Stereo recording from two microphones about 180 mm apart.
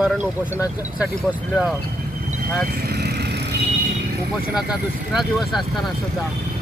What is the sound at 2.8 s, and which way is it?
Vehicle, 60° right (ahead or behind).